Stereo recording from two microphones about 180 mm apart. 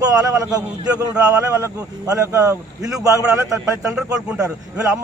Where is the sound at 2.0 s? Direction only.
20° right (ahead or behind).